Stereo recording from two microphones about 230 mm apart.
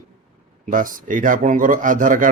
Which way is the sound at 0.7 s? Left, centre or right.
Right.